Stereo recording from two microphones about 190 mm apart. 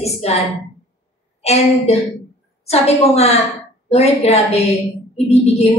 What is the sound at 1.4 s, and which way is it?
A woman's voice, 35° left (ahead or behind).